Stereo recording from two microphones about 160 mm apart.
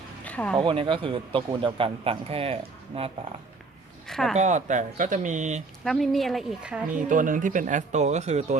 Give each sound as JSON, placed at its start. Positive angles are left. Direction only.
{"t": 0.3, "sound": "a sound", "side_deg": 10}
{"t": 0.5, "sound": "a man's voice", "side_deg": -30}
{"t": 4.0, "sound": "speech", "side_deg": 0}
{"t": 4.4, "sound": "speech", "side_deg": -50}
{"t": 5.8, "sound": "a woman's voice", "side_deg": 0}
{"t": 6.9, "sound": "speech", "side_deg": -55}